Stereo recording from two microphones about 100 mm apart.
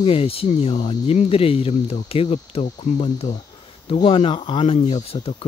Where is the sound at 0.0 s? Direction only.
70° left (ahead or behind).